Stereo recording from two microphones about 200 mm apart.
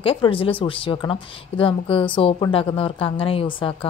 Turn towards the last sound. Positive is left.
turn(degrees=25)  # may be behind; listen again after turning